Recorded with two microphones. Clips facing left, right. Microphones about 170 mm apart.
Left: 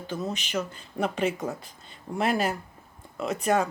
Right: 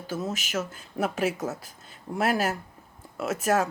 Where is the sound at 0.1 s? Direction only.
Centre (ahead or behind).